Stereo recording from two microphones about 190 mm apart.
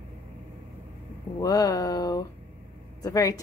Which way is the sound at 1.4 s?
20° left (ahead or behind).